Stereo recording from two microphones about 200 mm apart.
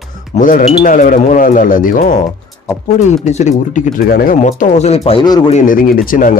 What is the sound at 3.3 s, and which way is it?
Speech, 35° left (ahead or behind).